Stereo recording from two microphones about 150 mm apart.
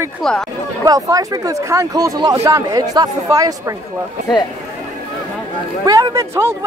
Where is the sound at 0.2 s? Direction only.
Centre (ahead or behind).